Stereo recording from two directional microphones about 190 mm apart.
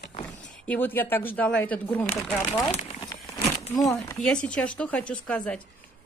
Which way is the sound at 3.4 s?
35° left (ahead or behind).